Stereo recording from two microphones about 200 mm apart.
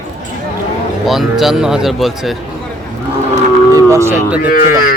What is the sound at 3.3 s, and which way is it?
Cattle, 15° right (ahead or behind).